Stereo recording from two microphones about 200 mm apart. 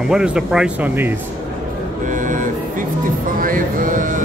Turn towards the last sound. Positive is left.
turn(degrees=-45)  # may be behind; listen again after turning